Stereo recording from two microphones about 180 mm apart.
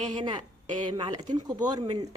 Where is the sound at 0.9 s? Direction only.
25° right (ahead or behind).